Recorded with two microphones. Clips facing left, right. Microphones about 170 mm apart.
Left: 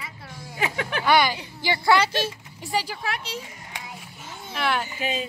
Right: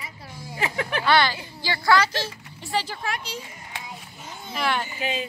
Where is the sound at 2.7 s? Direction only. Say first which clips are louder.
Even; 5° left (ahead or behind).